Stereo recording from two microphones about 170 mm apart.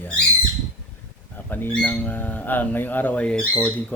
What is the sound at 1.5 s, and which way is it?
Speech, 10° left (ahead or behind).